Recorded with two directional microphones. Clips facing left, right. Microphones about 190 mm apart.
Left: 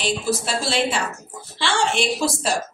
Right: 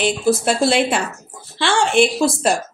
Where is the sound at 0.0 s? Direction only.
55° right (ahead or behind).